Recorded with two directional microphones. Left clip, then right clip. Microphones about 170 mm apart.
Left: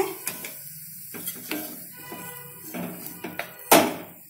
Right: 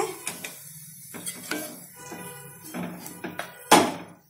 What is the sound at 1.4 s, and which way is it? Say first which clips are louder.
Music: right 1 dB; centre (ahead or behind).